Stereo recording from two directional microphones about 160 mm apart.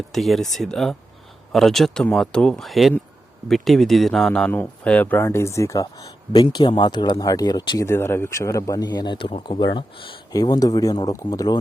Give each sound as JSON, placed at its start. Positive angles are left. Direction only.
{"t": 0.1, "sound": "speech", "side_deg": 0}
{"t": 7.9, "sound": "speech", "side_deg": 15}